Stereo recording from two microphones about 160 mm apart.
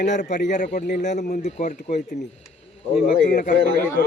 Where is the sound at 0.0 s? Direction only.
50° left (ahead or behind).